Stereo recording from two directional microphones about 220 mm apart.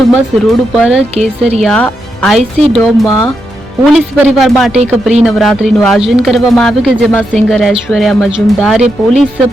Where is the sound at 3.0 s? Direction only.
15° left (ahead or behind).